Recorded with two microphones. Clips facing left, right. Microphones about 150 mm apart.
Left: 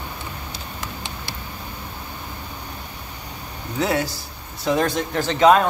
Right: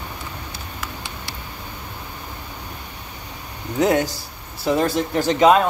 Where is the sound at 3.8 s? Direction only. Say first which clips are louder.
Right 4 dB; 40° right (ahead or behind).